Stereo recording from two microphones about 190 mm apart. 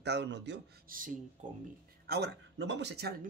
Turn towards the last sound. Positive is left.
turn(degrees=-55)  # may be behind; listen again after turning